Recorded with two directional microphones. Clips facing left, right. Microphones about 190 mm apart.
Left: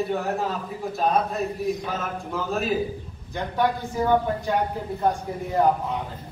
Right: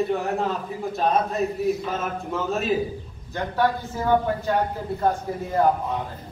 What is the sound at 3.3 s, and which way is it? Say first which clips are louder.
Speech: right 1 dB; 15° left (ahead or behind).